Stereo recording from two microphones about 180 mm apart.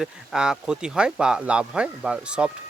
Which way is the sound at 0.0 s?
5° right (ahead or behind).